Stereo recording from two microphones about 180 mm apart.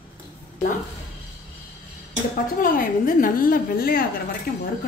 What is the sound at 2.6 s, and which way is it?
A woman's voice, 50° left (ahead or behind).